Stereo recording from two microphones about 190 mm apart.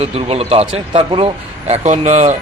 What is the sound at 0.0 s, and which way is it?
Speech, 30° right (ahead or behind).